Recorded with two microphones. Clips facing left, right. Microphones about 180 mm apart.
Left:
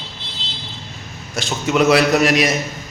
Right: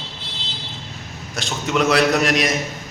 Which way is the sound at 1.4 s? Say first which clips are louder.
Left 4 dB; centre (ahead or behind).